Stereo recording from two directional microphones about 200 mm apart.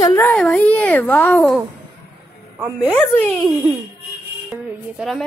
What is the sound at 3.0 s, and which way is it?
Speech, 5° left (ahead or behind).